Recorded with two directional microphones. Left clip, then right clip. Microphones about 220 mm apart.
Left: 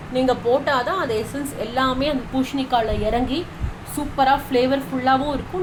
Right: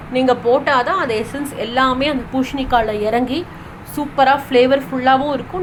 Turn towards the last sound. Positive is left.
turn(degrees=-15)  # may be behind; listen again after turning